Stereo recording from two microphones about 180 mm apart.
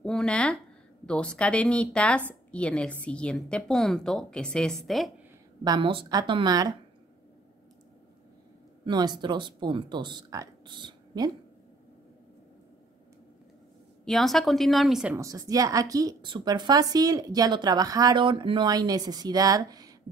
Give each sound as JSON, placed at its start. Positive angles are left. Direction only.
{"t": 0.0, "sound": "a woman's voice", "side_deg": 5}
{"t": 5.6, "sound": "a woman's voice", "side_deg": -25}
{"t": 8.8, "sound": "a woman's voice", "side_deg": -25}
{"t": 14.0, "sound": "a woman's voice", "side_deg": 0}
{"t": 15.1, "sound": "a woman's voice", "side_deg": -20}